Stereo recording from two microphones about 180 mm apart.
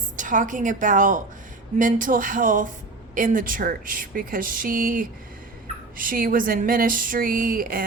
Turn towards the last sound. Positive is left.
turn(degrees=-55)  # may be behind; listen again after turning